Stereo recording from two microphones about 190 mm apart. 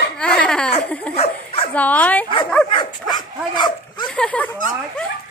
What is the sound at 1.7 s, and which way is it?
Bow-wow, 10° left (ahead or behind).